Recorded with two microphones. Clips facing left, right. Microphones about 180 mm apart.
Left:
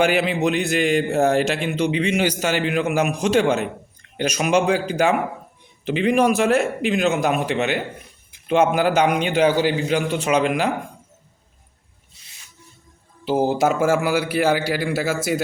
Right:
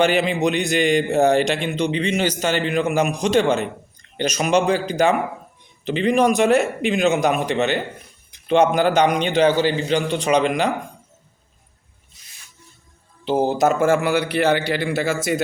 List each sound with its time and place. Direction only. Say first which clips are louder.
0.0 s a man's voice: right 1 dB; 5° left (ahead or behind)
12.2 s a sound: even; 30° left (ahead or behind)
13.2 s a man's voice: right 1 dB; 10° left (ahead or behind)